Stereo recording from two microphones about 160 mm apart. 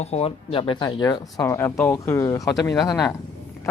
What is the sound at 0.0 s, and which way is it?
Speech, 40° left (ahead or behind).